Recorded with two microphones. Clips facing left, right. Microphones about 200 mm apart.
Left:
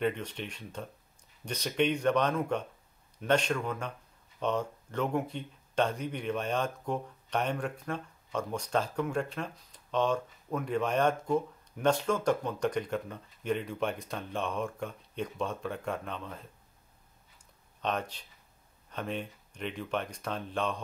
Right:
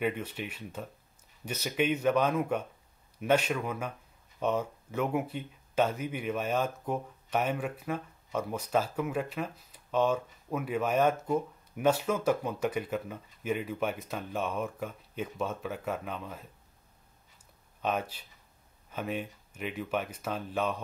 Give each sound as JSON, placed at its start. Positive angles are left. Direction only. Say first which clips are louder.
{"t": 0.0, "sound": "a man's voice", "louder": "even", "side_deg": -5}
{"t": 17.8, "sound": "speech", "louder": "right 1 dB", "side_deg": -5}